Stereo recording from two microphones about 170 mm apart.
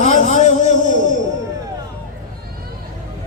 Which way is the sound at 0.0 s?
45° left (ahead or behind).